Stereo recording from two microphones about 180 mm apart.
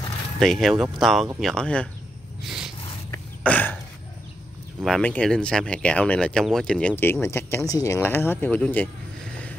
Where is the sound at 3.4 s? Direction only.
10° left (ahead or behind).